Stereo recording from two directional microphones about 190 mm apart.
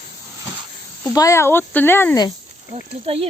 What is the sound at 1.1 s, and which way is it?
Speech, 15° left (ahead or behind).